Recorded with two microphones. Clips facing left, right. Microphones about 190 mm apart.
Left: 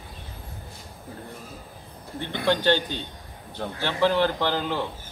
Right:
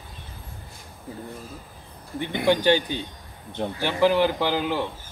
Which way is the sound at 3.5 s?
25° right (ahead or behind).